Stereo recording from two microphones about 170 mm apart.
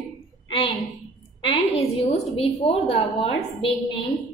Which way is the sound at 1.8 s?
35° left (ahead or behind).